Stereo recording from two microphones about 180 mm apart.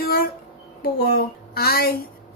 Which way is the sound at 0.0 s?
55° left (ahead or behind).